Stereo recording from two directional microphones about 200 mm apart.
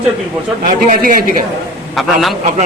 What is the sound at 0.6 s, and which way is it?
Speech, 40° right (ahead or behind).